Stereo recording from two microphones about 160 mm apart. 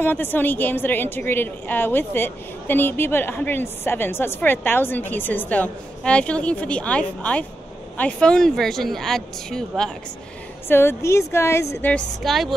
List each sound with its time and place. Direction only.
0.0 s a woman's voice: 10° left (ahead or behind)
10.7 s a woman's voice: 15° left (ahead or behind)
12.2 s speech: centre (ahead or behind)